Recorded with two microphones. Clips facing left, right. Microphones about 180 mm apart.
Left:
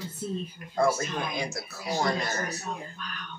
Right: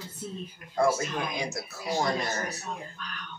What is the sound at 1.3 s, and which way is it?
Speech, 20° right (ahead or behind).